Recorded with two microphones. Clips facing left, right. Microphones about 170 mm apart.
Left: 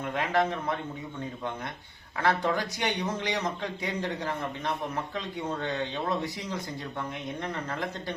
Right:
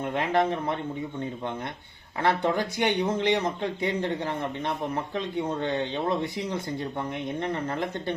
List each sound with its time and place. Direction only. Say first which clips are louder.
0.0 s speech: right 3 dB; 25° right (ahead or behind)
2.2 s speech: right 2 dB; 25° right (ahead or behind)
5.6 s speech: right 4 dB; 25° right (ahead or behind)